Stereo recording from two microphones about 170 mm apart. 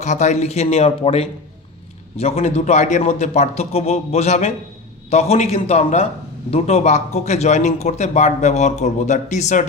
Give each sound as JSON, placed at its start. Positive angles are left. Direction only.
{"t": 0.0, "sound": "a man's voice", "side_deg": 45}